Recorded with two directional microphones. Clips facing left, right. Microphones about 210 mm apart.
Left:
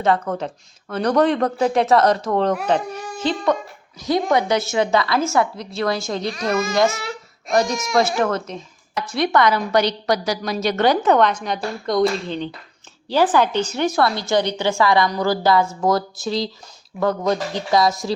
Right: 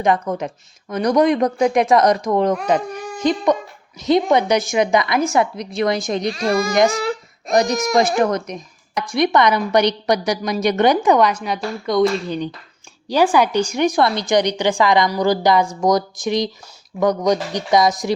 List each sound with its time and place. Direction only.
0.0 s speech: 15° right (ahead or behind)
6.4 s speech: 30° right (ahead or behind)
6.9 s baby cry: 35° right (ahead or behind)
7.5 s speech: 15° right (ahead or behind)